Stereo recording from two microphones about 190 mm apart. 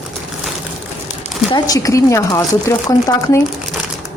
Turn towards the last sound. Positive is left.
turn(degrees=15)  # may be behind; listen again after turning